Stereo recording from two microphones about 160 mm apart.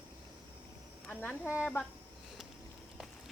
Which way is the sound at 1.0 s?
10° left (ahead or behind).